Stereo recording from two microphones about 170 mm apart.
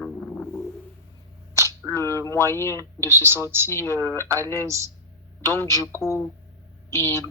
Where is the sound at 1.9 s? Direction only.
15° left (ahead or behind).